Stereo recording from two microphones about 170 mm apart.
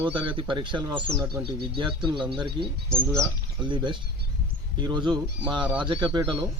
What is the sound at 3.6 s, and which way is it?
Speech, 30° right (ahead or behind).